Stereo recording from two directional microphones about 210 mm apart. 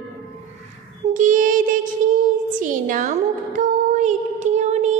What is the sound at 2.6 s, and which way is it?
Speech, 40° right (ahead or behind).